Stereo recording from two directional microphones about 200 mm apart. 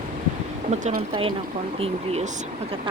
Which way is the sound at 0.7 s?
35° right (ahead or behind).